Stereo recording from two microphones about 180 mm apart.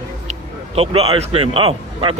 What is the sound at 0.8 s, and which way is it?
Speech, 35° right (ahead or behind).